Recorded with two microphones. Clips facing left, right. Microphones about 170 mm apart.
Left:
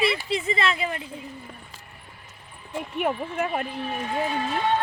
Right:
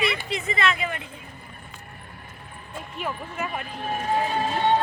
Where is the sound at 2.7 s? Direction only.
65° left (ahead or behind).